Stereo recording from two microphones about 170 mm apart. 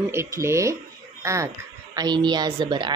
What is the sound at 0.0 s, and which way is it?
A woman's voice, 15° right (ahead or behind).